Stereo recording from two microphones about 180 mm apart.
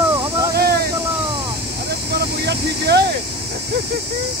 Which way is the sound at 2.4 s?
70° right (ahead or behind).